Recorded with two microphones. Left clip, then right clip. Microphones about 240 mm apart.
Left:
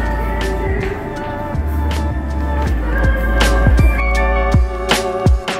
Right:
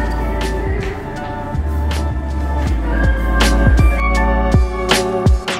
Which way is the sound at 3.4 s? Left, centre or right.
Centre.